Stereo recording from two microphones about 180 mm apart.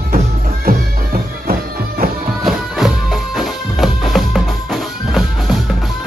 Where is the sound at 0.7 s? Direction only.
50° right (ahead or behind).